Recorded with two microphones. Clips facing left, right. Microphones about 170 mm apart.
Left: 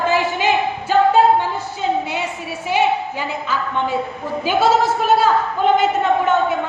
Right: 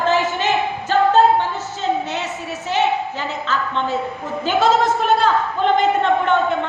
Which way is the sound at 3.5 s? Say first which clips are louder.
Even; 10° left (ahead or behind).